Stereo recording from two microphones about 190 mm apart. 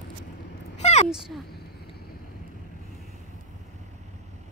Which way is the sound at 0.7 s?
35° left (ahead or behind).